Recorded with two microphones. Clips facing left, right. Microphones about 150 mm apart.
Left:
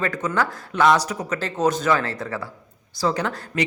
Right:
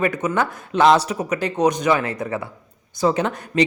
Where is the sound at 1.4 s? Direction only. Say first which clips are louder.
Right 2 dB; 15° right (ahead or behind).